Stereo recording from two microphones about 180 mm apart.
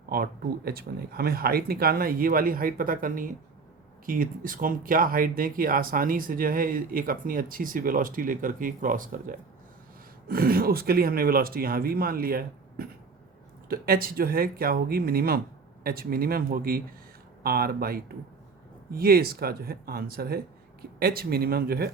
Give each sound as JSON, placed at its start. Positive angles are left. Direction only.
{"t": 0.1, "sound": "speech", "side_deg": -60}